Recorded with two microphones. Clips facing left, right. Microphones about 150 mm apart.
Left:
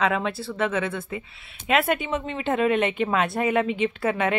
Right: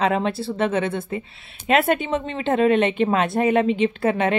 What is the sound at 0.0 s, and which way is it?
Speech, 25° right (ahead or behind).